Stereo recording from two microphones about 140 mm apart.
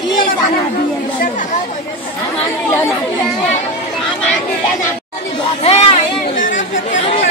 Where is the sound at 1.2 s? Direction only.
70° left (ahead or behind).